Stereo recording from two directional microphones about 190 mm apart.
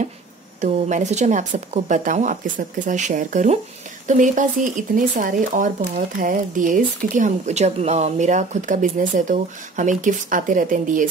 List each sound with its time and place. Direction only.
0.6 s speech: 40° right (ahead or behind)